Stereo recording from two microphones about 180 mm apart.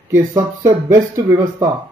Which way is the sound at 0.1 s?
15° right (ahead or behind).